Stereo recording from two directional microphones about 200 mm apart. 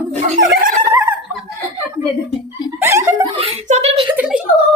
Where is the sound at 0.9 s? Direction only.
10° right (ahead or behind).